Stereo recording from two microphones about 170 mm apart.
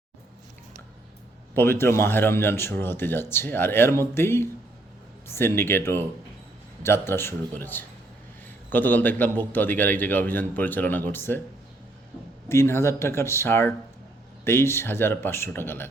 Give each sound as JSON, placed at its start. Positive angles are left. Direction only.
{"t": 1.5, "sound": "a man's voice", "side_deg": 15}
{"t": 12.5, "sound": "a man's voice", "side_deg": 15}